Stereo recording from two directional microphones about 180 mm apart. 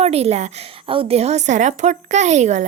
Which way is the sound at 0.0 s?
35° right (ahead or behind).